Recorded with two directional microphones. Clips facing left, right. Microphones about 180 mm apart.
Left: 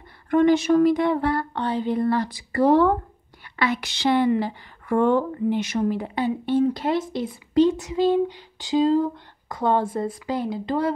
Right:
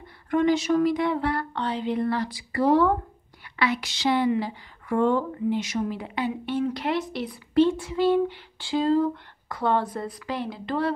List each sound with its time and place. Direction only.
0.3 s a woman's voice: 55° left (ahead or behind); by 10.9 s 20° left (ahead or behind)